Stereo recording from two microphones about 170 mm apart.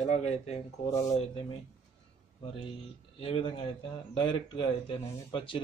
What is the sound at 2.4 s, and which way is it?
Speech, 30° left (ahead or behind).